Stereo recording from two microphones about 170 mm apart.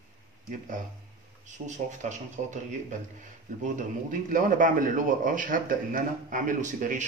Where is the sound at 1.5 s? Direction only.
45° right (ahead or behind).